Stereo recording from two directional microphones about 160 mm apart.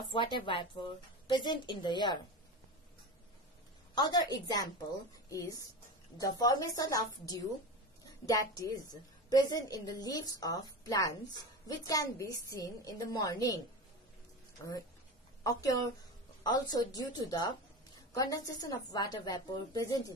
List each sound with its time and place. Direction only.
0.1 s a woman's voice: 30° left (ahead or behind)
3.9 s a woman's voice: 25° left (ahead or behind)
15.4 s a woman's voice: 20° left (ahead or behind)